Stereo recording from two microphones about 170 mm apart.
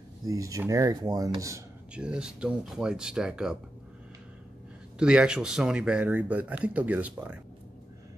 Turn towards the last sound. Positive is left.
turn(degrees=-10)  # may be behind; listen again after turning